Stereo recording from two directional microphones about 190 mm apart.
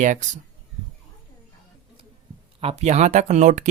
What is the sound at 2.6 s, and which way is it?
Speech, 30° right (ahead or behind).